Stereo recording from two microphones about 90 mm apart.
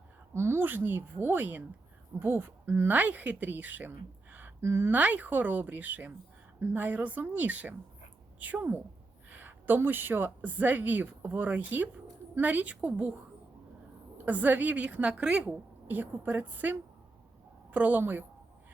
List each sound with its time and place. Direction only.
0.3 s a woman's voice: 30° right (ahead or behind)
14.3 s a woman's voice: 20° right (ahead or behind)
15.4 s a woman's voice: 20° right (ahead or behind)